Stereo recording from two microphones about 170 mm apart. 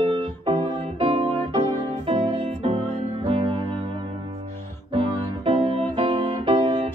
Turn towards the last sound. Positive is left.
turn(degrees=-30)  # may be behind; listen again after turning